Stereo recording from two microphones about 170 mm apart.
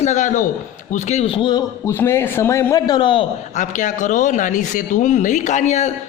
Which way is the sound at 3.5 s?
50° left (ahead or behind).